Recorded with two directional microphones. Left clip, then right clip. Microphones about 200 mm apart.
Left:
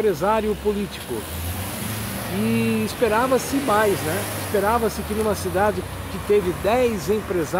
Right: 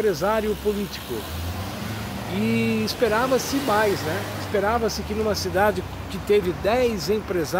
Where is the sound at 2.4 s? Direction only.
Centre (ahead or behind).